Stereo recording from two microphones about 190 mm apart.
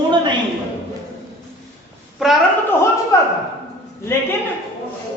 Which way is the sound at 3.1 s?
15° left (ahead or behind).